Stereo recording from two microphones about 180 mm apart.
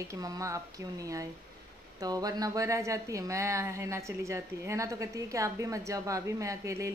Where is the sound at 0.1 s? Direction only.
20° right (ahead or behind).